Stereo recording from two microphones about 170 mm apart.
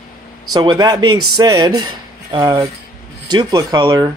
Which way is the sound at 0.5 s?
25° right (ahead or behind).